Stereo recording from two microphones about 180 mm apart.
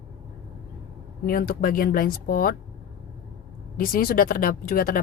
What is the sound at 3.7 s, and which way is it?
Speech, 50° left (ahead or behind).